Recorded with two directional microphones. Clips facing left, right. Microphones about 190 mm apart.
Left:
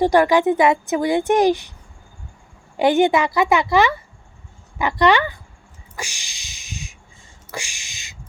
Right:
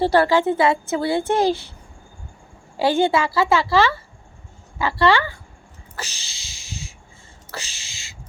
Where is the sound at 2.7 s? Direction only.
20° left (ahead or behind).